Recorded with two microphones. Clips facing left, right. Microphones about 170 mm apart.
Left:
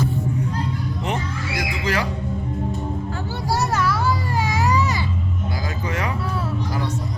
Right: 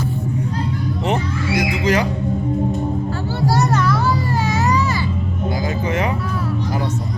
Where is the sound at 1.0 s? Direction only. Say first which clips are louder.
Right 7 dB; 20° right (ahead or behind).